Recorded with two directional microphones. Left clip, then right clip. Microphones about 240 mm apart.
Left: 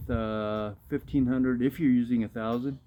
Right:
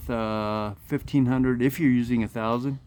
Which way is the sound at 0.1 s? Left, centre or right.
Right.